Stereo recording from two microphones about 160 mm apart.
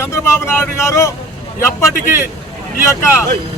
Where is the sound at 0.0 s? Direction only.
15° left (ahead or behind).